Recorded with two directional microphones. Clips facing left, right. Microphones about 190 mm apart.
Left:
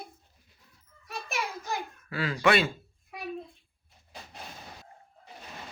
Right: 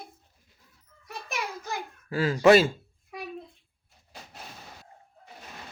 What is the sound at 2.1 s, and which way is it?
Speech, 40° right (ahead or behind).